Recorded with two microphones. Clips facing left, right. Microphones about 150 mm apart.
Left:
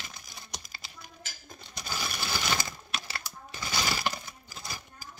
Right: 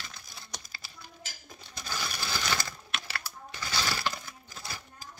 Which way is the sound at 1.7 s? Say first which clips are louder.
Left 1 dB; 15° left (ahead or behind).